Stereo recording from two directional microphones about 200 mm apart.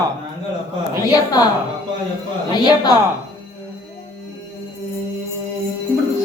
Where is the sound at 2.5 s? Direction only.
20° left (ahead or behind).